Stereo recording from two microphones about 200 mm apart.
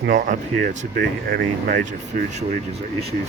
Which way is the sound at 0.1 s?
40° right (ahead or behind).